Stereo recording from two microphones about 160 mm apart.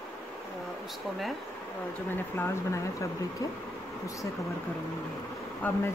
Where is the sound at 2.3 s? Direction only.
15° left (ahead or behind).